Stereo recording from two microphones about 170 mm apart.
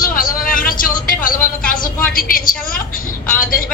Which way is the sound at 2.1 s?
55° left (ahead or behind).